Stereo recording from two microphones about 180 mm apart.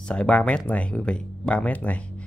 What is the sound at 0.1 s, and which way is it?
Speech, 5° left (ahead or behind).